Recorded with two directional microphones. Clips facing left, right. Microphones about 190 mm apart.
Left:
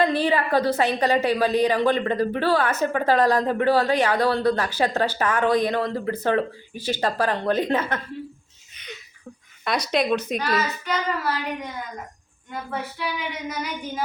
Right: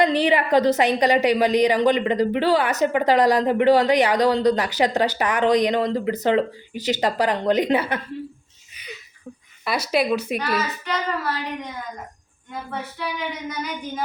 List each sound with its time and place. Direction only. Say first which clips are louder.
0.0 s a woman's voice: right 2 dB; 15° right (ahead or behind)
8.7 s a sound: right 1 dB; 10° right (ahead or behind)
9.6 s a child's voice: right 1 dB; 5° right (ahead or behind)